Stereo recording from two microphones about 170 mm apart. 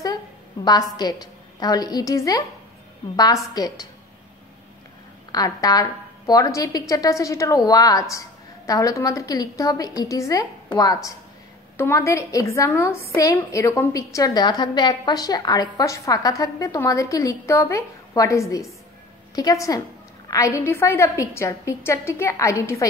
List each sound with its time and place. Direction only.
0.6 s a woman's voice: 20° left (ahead or behind)
3.5 s a woman's voice: 20° left (ahead or behind)
5.3 s a woman's voice: 20° left (ahead or behind)